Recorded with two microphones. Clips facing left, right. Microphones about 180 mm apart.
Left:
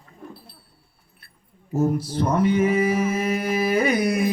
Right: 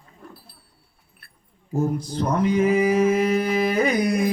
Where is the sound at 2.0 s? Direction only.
5° left (ahead or behind).